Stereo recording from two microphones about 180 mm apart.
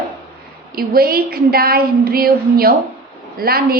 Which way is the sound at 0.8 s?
55° right (ahead or behind).